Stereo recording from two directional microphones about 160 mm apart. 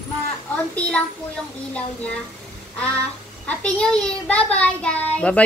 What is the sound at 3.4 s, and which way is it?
A child's voice, 5° left (ahead or behind).